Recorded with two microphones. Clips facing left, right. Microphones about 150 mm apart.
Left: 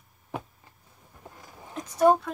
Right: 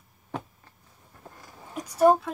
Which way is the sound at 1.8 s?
10° right (ahead or behind).